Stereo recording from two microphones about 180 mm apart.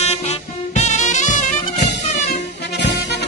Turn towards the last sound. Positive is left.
turn(degrees=70)  # may be behind; listen again after turning